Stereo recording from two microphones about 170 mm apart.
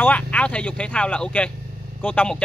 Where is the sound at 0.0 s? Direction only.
10° left (ahead or behind).